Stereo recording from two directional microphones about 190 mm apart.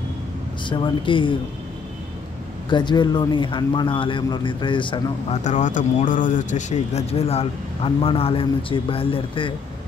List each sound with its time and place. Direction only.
0.7 s speech: 25° left (ahead or behind)
2.7 s speech: 25° left (ahead or behind)
5.4 s speech: 40° left (ahead or behind)